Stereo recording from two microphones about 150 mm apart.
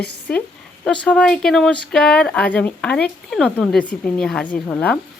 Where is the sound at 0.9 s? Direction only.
5° left (ahead or behind).